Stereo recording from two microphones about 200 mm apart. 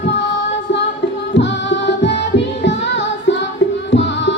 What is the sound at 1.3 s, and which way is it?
Music, 65° left (ahead or behind).